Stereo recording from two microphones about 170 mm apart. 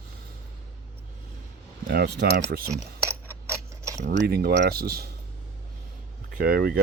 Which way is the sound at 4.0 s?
80° right.